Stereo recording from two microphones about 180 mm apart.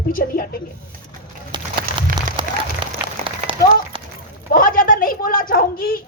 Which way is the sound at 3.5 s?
30° right (ahead or behind).